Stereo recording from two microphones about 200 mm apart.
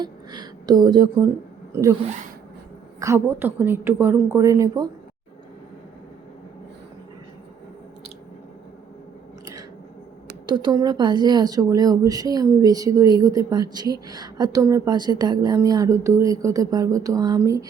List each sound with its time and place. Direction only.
0.0 s a woman's voice: 20° right (ahead or behind)
3.0 s a woman's voice: 15° right (ahead or behind)
10.4 s speech: 20° right (ahead or behind)